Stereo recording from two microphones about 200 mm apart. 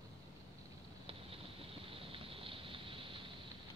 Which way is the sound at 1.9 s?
25° right (ahead or behind).